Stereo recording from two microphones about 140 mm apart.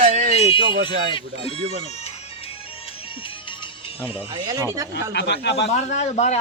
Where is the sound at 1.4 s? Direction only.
50° left (ahead or behind).